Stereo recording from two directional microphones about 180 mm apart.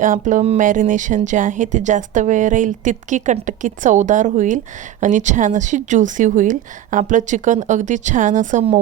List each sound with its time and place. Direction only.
0.0 s a woman's voice: 45° right (ahead or behind)